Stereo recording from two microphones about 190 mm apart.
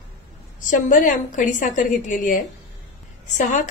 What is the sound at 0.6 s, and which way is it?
A woman's voice, 45° left (ahead or behind).